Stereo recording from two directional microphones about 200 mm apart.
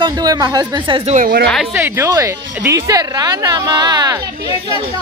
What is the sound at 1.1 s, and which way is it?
Speech, 45° right (ahead or behind).